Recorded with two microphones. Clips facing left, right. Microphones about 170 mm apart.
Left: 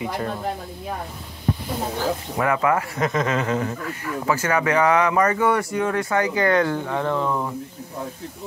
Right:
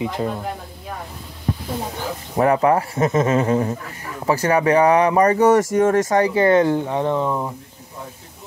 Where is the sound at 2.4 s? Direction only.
35° right (ahead or behind); by 7.5 s 15° right (ahead or behind).